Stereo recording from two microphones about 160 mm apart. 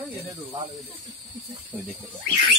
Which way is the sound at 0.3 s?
25° right (ahead or behind).